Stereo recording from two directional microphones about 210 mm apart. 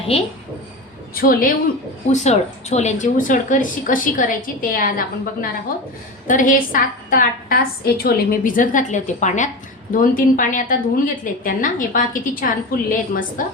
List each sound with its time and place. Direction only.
0.1 s a woman's voice: 30° left (ahead or behind)
1.1 s a woman's voice: 45° left (ahead or behind)